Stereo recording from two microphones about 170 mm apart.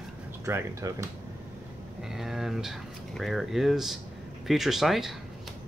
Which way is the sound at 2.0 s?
Centre (ahead or behind).